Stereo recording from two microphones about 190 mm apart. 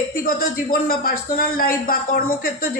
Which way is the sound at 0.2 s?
50° left (ahead or behind).